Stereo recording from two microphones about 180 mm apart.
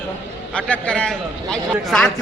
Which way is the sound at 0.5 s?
5° left (ahead or behind).